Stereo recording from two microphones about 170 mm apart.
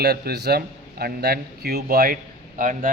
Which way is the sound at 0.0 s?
70° right (ahead or behind).